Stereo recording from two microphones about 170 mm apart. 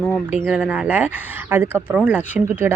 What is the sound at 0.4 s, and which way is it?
Speech, 5° right (ahead or behind).